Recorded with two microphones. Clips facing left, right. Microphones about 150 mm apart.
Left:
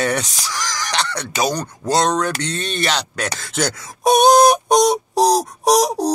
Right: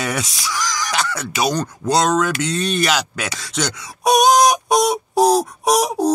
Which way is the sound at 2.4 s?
5° right (ahead or behind).